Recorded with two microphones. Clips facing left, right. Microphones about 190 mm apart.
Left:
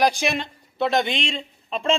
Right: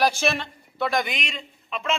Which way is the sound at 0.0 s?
15° left (ahead or behind).